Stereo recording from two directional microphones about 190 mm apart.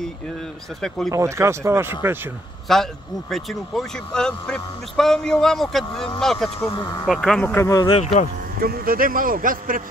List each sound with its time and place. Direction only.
0.7 s speech: centre (ahead or behind)
1.1 s speech: 15° right (ahead or behind)
2.7 s speech: centre (ahead or behind)
6.6 s speech: 20° left (ahead or behind)
7.1 s speech: centre (ahead or behind); by 8.0 s 20° left (ahead or behind)
8.0 s speech: 35° left (ahead or behind)
8.5 s speech: 50° right (ahead or behind)